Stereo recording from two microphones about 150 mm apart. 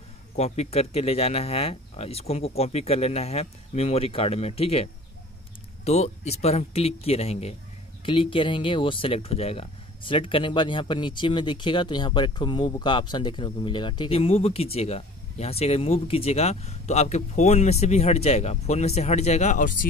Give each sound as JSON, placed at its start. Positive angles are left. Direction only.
{"t": 0.4, "sound": "speech", "side_deg": 45}
{"t": 5.9, "sound": "speech", "side_deg": 45}